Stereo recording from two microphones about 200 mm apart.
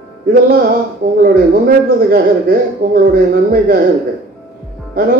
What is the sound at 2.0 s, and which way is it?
Speech, 45° right (ahead or behind).